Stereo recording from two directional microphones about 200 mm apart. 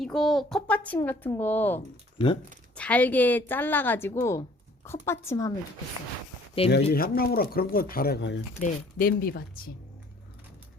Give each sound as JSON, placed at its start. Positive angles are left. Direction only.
{"t": 0.0, "sound": "a woman's voice", "side_deg": 0}
{"t": 2.1, "sound": "speech", "side_deg": 25}
{"t": 2.7, "sound": "a woman's voice", "side_deg": 5}
{"t": 6.6, "sound": "speech", "side_deg": 30}
{"t": 6.9, "sound": "speech", "side_deg": 50}
{"t": 8.6, "sound": "speech", "side_deg": 45}